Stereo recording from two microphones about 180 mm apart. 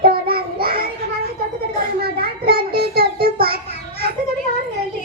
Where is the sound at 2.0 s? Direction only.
55° right (ahead or behind).